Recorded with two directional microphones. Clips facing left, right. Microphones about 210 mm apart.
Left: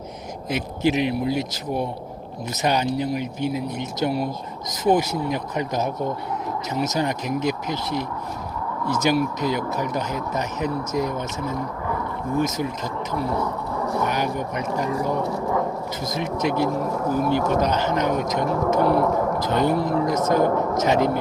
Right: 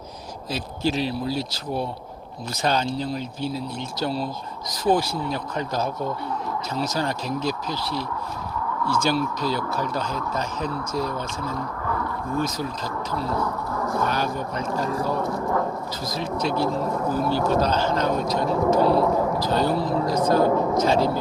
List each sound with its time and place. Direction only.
0.5 s speech: 20° left (ahead or behind)